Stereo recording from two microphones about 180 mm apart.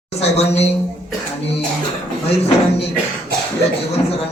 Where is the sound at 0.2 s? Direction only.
35° left (ahead or behind).